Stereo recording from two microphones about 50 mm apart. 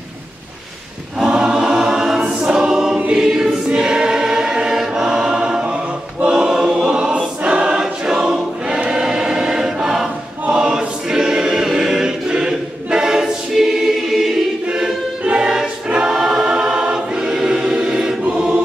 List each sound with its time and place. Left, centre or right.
1.2 s choir: centre